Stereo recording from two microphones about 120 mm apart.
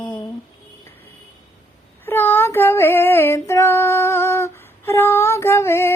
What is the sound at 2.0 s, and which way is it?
Female singing, 15° left (ahead or behind).